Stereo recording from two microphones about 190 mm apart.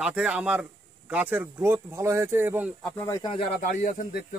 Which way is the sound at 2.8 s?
10° left (ahead or behind).